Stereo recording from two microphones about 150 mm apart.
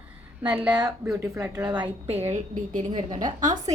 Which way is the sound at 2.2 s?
50° right (ahead or behind).